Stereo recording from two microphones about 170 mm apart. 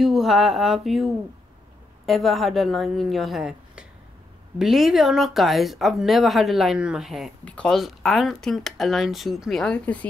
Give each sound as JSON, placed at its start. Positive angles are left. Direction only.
{"t": 0.0, "sound": "speech", "side_deg": 0}